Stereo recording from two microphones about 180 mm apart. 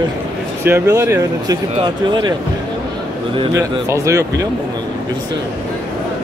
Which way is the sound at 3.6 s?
15° right (ahead or behind).